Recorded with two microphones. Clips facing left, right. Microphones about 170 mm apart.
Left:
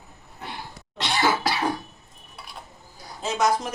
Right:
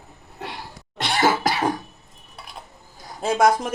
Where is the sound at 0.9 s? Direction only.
50° right (ahead or behind).